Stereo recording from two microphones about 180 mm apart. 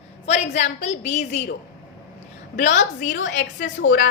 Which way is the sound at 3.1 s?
85° left.